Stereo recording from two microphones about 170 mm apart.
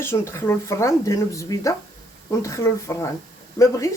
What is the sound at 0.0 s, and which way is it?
Speech, 15° left (ahead or behind).